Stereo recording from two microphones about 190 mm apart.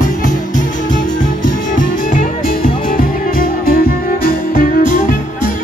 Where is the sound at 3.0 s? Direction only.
50° left (ahead or behind).